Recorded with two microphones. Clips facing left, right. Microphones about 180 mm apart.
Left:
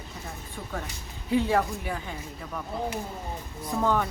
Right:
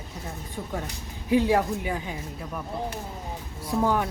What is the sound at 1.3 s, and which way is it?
Speech, 10° right (ahead or behind).